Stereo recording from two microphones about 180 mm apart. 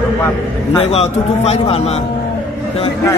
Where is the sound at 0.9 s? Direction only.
35° left (ahead or behind).